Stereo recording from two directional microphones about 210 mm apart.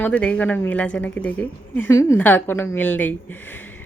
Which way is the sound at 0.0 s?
5° left (ahead or behind).